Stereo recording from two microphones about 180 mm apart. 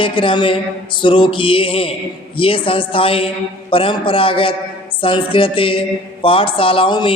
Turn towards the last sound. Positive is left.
turn(degrees=25)  # may be behind; listen again after turning